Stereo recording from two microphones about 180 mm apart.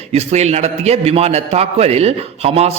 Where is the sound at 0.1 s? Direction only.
35° right (ahead or behind).